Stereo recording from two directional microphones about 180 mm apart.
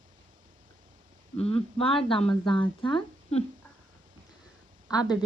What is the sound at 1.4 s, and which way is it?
Speech, 35° left (ahead or behind).